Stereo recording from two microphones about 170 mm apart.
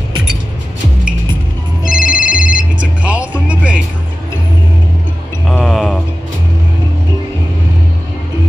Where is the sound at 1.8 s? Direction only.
5° right (ahead or behind).